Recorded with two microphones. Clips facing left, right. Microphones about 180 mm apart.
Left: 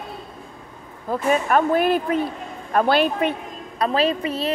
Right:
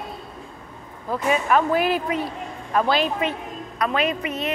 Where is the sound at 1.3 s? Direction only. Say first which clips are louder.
Left 1 dB; 50° left (ahead or behind).